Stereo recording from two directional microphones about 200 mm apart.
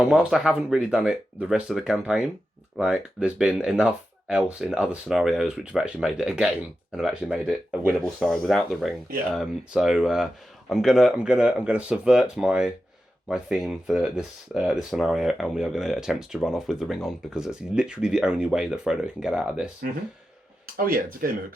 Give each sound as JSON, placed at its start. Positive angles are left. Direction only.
{"t": 0.0, "sound": "speech", "side_deg": -5}
{"t": 20.7, "sound": "speech", "side_deg": -45}